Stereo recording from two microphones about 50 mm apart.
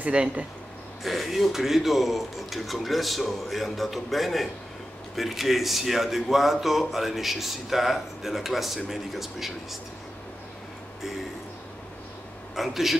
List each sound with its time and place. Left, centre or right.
0.0 s speech: right
1.0 s speech: centre
12.5 s speech: centre